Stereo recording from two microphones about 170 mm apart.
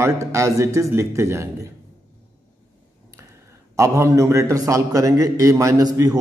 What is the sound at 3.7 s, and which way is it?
A man's voice, 15° right (ahead or behind).